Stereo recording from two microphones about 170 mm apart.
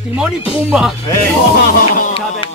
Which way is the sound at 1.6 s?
55° left (ahead or behind).